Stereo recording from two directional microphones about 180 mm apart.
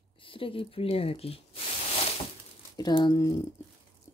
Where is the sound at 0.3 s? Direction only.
30° left (ahead or behind).